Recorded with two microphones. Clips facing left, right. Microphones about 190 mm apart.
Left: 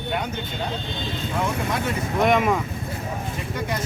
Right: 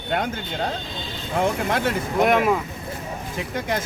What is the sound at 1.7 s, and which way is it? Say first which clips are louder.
Speech: right 3 dB; 75° right (ahead or behind).